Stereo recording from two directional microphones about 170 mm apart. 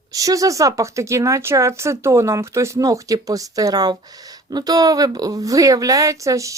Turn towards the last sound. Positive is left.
turn(degrees=-20)  # may be behind; listen again after turning